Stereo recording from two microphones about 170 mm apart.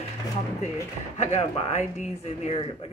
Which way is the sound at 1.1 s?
40° left (ahead or behind).